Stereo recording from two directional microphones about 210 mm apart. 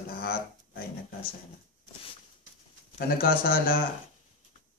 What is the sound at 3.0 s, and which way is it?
Speech, 45° left (ahead or behind).